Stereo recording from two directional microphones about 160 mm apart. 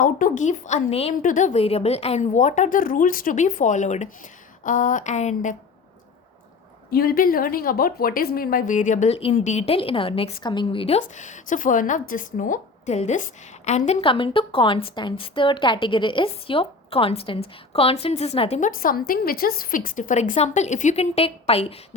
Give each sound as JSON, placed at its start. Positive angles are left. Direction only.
{"t": 0.0, "sound": "a woman's voice", "side_deg": 55}
{"t": 1.2, "sound": "a woman's voice", "side_deg": 55}
{"t": 6.9, "sound": "a woman's voice", "side_deg": 70}
{"t": 18.8, "sound": "a woman's voice", "side_deg": 65}
{"t": 20.3, "sound": "a woman's voice", "side_deg": 45}